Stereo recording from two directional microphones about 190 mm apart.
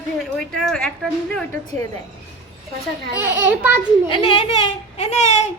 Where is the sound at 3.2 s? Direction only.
10° right (ahead or behind).